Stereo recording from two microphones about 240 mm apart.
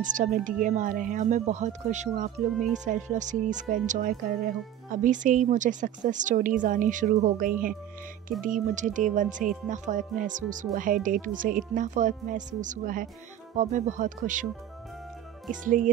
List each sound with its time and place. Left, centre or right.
0.0 s speech: right
15.6 s speech: right